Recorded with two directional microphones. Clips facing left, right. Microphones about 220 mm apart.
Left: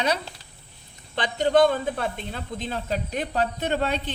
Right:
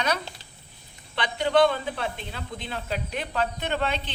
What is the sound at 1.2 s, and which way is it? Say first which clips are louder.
Speech: left 2 dB; 45° left (ahead or behind).